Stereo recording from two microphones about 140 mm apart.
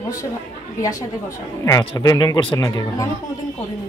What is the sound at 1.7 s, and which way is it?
Speech, 25° left (ahead or behind).